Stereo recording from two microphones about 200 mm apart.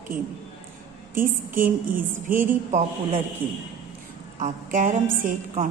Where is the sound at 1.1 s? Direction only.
45° right (ahead or behind).